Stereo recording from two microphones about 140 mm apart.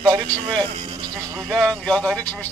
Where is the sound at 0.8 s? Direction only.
35° right (ahead or behind).